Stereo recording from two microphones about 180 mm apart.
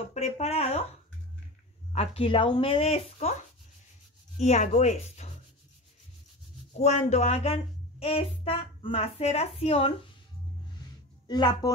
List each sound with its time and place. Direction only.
0.1 s speech: 35° left (ahead or behind)
1.9 s speech: 30° left (ahead or behind)
4.4 s speech: 40° left (ahead or behind)
6.8 s speech: 40° left (ahead or behind)
11.2 s speech: 25° left (ahead or behind)